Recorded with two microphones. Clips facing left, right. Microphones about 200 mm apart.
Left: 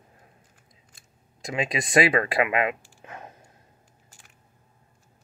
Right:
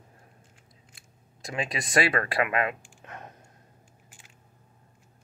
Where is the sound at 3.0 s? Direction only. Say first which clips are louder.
Left 2 dB; 5° left (ahead or behind).